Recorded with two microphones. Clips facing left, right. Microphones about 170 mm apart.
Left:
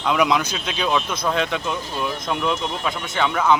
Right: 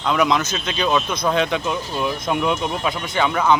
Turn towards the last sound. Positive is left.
turn(degrees=0)  # may be behind; listen again after turning